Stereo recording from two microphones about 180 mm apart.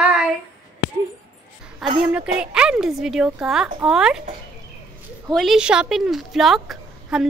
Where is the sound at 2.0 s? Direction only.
5° right (ahead or behind).